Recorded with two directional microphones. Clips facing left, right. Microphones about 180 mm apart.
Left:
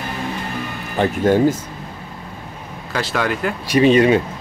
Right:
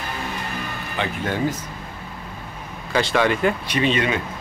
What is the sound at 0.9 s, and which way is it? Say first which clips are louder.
Speech: left 10 dB; 45° left (ahead or behind).